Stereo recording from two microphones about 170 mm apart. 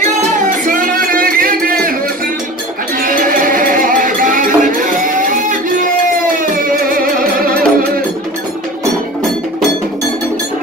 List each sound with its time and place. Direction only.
0.4 s music: 55° right (ahead or behind)
3.0 s music: 55° right (ahead or behind)